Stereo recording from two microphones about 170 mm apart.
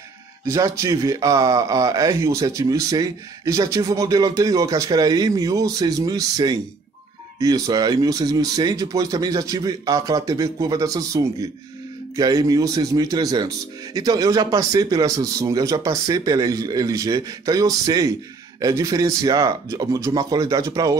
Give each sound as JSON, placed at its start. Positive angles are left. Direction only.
{"t": 0.5, "sound": "speech", "side_deg": -20}